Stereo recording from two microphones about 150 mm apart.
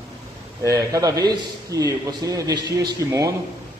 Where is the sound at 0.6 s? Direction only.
20° right (ahead or behind).